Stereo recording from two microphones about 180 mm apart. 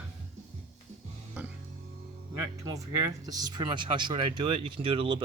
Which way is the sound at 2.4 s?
20° right (ahead or behind).